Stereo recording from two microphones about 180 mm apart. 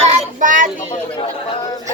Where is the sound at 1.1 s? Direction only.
25° left (ahead or behind).